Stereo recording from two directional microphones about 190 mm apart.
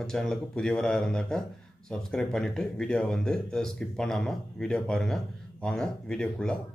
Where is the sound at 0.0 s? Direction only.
5° left (ahead or behind).